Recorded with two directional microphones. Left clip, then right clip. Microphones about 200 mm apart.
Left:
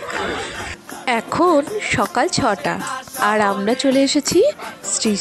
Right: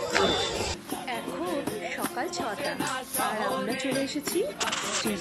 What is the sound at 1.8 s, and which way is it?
A woman's voice, 50° left (ahead or behind).